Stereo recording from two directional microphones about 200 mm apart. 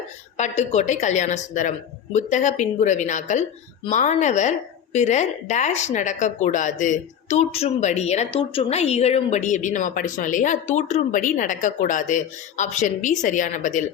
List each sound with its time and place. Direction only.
0.3 s a woman's voice: 35° left (ahead or behind)